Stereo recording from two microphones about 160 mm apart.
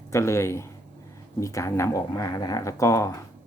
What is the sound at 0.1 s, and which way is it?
Speech, 15° left (ahead or behind).